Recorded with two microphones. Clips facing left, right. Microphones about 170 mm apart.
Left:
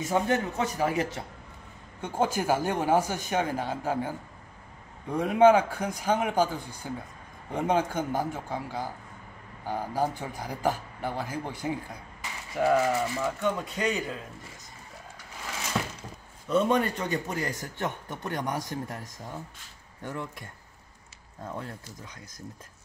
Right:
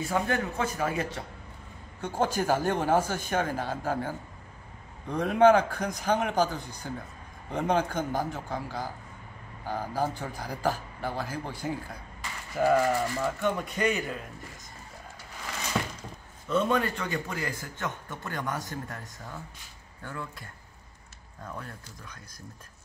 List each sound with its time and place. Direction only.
0.0 s speech: 20° left (ahead or behind)
2.0 s a man's voice: 10° left (ahead or behind)
12.5 s speech: centre (ahead or behind)
15.4 s a sound: 5° left (ahead or behind)
16.4 s a man's voice: 15° left (ahead or behind)
21.5 s speech: 25° left (ahead or behind)